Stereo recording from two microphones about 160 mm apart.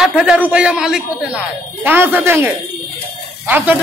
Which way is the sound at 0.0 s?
5° right (ahead or behind).